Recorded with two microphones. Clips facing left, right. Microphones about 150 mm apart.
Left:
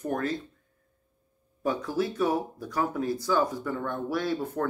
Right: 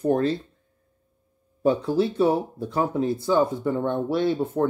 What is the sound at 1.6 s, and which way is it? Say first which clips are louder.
Speech: right 7 dB; 30° right (ahead or behind).